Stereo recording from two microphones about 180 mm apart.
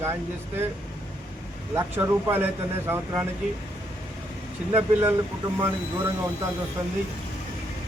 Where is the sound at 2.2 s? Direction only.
15° right (ahead or behind).